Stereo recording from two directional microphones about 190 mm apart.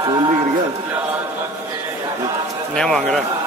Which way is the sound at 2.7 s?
5° left (ahead or behind).